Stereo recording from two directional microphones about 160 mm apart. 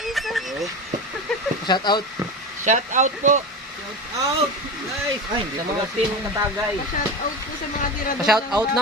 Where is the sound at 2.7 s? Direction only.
50° right (ahead or behind).